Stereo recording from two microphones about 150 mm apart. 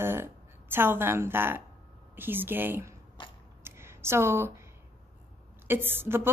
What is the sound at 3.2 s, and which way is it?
Biting, 35° left (ahead or behind).